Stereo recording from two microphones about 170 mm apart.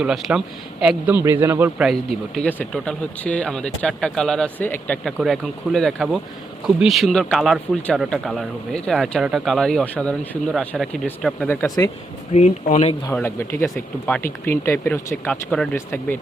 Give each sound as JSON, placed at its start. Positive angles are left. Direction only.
{"t": 0.0, "sound": "a man's voice", "side_deg": 0}
{"t": 1.9, "sound": "speech", "side_deg": 0}
{"t": 12.3, "sound": "speech", "side_deg": 45}
{"t": 13.2, "sound": "speech", "side_deg": 15}